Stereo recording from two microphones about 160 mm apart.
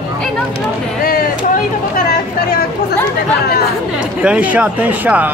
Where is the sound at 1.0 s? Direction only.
60° left (ahead or behind).